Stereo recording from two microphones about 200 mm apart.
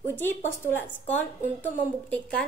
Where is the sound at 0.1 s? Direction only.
10° left (ahead or behind).